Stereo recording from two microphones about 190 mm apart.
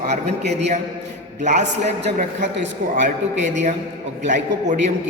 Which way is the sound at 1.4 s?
40° right (ahead or behind).